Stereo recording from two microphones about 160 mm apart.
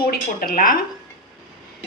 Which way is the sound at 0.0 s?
65° left (ahead or behind).